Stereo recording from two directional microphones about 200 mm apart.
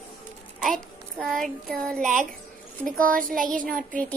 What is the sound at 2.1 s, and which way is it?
Speech, 40° right (ahead or behind).